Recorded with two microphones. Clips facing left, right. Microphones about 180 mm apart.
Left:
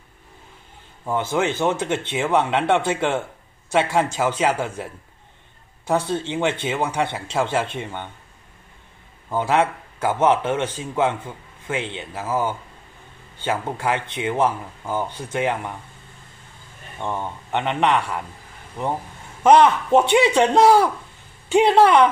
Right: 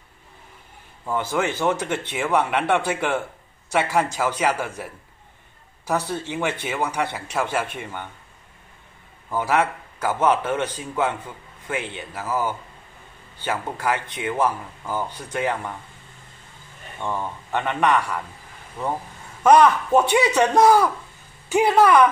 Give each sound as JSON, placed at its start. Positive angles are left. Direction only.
{"t": 1.1, "sound": "speech", "side_deg": 20}
{"t": 9.3, "sound": "speech", "side_deg": 25}
{"t": 17.0, "sound": "speech", "side_deg": 20}
{"t": 19.4, "sound": "speech", "side_deg": 25}